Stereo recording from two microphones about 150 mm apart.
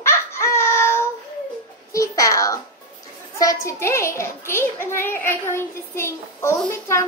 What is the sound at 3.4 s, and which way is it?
A child's voice, 20° left (ahead or behind).